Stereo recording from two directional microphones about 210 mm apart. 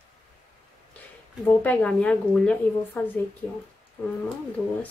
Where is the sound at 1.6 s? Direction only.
5° left (ahead or behind).